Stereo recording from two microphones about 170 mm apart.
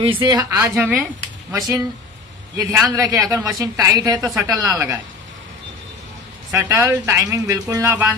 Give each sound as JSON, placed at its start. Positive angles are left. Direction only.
{"t": 0.0, "sound": "a woman's voice", "side_deg": -30}
{"t": 6.5, "sound": "speech", "side_deg": -15}